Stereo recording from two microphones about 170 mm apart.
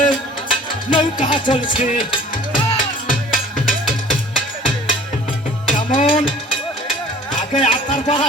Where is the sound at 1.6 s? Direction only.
50° left (ahead or behind).